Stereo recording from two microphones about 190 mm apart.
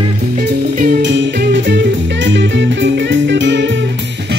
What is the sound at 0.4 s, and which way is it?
Music, 50° right (ahead or behind).